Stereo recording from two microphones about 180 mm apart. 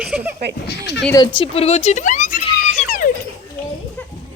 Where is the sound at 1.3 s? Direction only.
35° left (ahead or behind).